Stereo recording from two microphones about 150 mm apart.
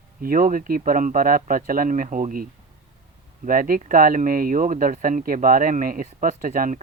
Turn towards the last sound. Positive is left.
turn(degrees=-60)  # may be behind; listen again after turning